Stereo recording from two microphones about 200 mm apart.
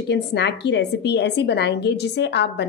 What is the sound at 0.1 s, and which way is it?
A woman's voice, 60° left (ahead or behind).